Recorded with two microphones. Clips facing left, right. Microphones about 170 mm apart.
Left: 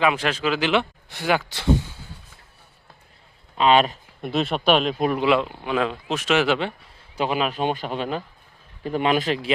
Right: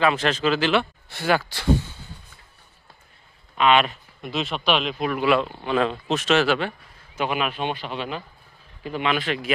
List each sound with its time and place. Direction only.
0.0 s speech: 10° left (ahead or behind)
3.6 s speech: 35° left (ahead or behind)
4.3 s speech: 55° left (ahead or behind)
5.1 s speech: 20° left (ahead or behind)
7.2 s speech: 35° left (ahead or behind)